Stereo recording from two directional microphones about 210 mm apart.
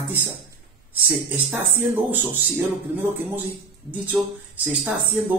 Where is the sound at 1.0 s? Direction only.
10° right (ahead or behind).